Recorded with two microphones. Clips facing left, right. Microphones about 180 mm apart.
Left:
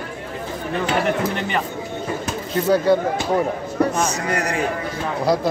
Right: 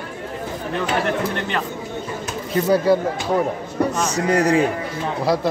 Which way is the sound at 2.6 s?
10° right (ahead or behind).